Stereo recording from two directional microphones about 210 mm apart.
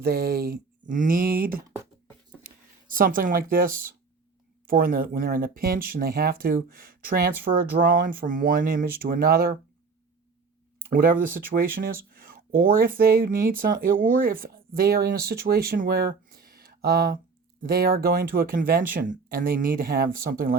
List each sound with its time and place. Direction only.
0.0 s speech: 50° right (ahead or behind)
2.9 s speech: 40° right (ahead or behind)
10.9 s speech: 40° right (ahead or behind)